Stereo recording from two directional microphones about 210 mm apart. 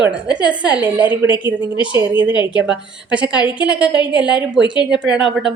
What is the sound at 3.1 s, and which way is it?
A woman's voice, 5° right (ahead or behind).